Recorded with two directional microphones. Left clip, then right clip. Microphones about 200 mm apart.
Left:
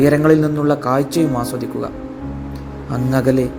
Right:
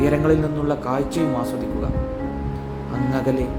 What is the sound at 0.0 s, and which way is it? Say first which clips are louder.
Speech: left 6 dB; 20° left (ahead or behind).